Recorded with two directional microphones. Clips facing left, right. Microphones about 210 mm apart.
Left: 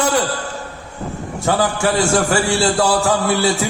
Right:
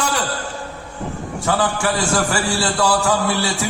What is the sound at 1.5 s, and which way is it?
A man's voice, 25° left (ahead or behind).